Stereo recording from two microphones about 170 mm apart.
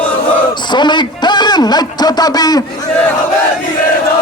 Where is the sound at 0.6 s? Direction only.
25° left (ahead or behind).